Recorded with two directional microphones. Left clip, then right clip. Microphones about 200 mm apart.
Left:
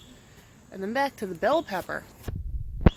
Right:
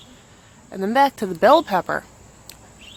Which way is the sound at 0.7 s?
20° right (ahead or behind).